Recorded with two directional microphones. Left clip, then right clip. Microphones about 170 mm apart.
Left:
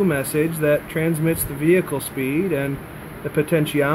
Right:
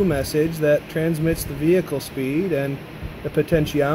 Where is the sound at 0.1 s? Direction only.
5° right (ahead or behind).